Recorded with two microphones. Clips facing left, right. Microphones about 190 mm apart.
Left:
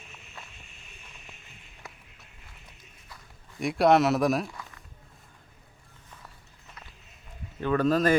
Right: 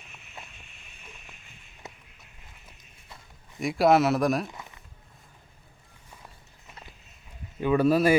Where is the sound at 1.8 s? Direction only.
20° right (ahead or behind).